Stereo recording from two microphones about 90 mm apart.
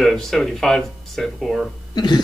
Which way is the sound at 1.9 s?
55° left (ahead or behind).